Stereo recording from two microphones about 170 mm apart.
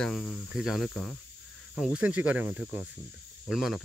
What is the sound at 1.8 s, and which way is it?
Speech, 5° right (ahead or behind).